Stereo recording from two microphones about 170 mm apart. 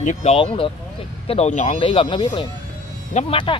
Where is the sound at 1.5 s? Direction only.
45° left (ahead or behind).